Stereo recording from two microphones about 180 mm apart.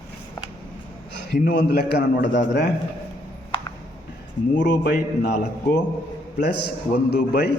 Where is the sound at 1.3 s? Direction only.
70° left (ahead or behind).